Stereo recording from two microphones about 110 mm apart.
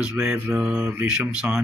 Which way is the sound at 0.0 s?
10° right (ahead or behind).